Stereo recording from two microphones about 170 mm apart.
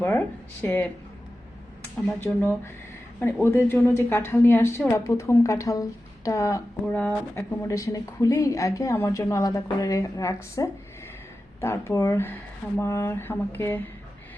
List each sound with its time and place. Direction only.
0.6 s a woman's voice: 10° left (ahead or behind)
2.2 s a woman's voice: 15° left (ahead or behind)
6.8 s a woman's voice: 5° left (ahead or behind)